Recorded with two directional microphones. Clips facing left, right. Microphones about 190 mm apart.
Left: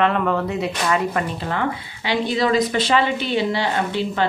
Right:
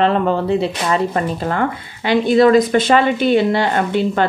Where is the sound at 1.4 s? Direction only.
45° right (ahead or behind).